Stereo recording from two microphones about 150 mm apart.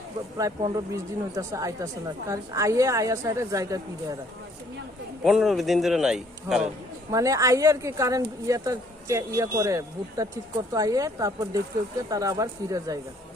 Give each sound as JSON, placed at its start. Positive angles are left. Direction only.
{"t": 0.3, "sound": "speech", "side_deg": -20}
{"t": 5.2, "sound": "a man's voice", "side_deg": 0}
{"t": 7.1, "sound": "speech", "side_deg": -20}